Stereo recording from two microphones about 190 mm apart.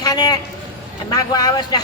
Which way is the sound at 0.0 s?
20° left (ahead or behind).